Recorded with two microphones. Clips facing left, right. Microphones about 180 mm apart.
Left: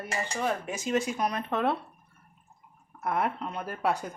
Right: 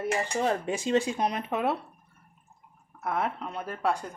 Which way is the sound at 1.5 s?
10° right (ahead or behind).